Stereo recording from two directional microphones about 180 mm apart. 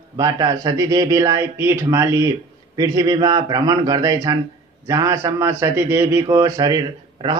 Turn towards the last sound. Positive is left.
turn(degrees=-20)  # may be behind; listen again after turning